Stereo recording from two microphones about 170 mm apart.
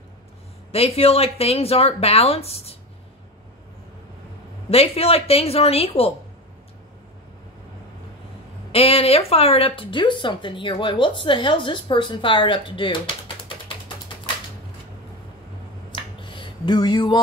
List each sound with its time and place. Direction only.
0.7 s speech: 35° left (ahead or behind)
4.6 s speech: 35° left (ahead or behind)
8.7 s speech: 35° left (ahead or behind)
15.9 s finger snapping: 30° left (ahead or behind)